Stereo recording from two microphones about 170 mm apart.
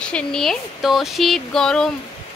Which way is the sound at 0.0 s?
5° left (ahead or behind).